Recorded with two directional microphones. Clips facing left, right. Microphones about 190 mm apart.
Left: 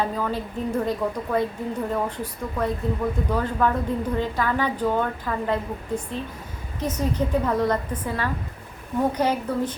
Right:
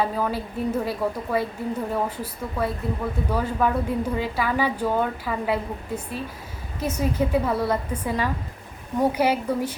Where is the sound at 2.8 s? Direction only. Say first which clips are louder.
Left 2 dB; 5° right (ahead or behind).